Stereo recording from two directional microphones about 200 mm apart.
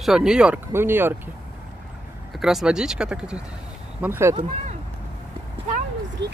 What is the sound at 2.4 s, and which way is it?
Speech, 5° right (ahead or behind).